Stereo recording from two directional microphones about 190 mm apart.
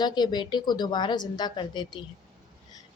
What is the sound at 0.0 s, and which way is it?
A woman's voice, 25° left (ahead or behind).